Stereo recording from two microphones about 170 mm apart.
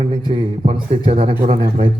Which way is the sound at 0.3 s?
30° right (ahead or behind).